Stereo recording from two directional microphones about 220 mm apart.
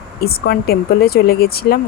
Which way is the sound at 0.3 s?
45° left (ahead or behind).